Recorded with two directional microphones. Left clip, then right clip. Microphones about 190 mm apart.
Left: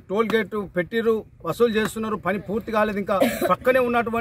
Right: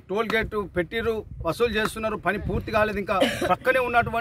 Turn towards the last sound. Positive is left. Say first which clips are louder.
# left 2 dB
turn(degrees=-10)  # may be behind; listen again after turning